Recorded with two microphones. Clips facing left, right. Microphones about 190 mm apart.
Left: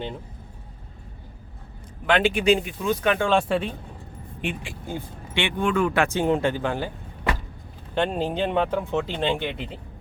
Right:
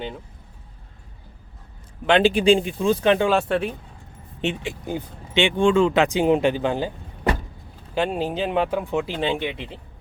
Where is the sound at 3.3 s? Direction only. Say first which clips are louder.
Right 1 dB; centre (ahead or behind).